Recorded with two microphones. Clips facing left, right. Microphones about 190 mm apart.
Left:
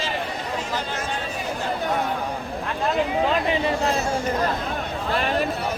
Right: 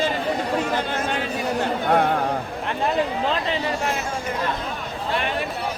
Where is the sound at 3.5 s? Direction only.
20° left (ahead or behind).